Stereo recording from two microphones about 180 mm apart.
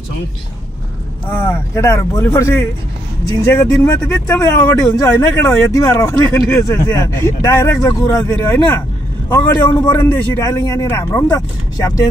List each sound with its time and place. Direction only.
1.3 s speech: 15° left (ahead or behind)
9.3 s speech: 25° left (ahead or behind)